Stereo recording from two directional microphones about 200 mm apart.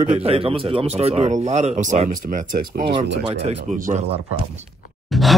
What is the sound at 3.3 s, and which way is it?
Speech, 30° right (ahead or behind).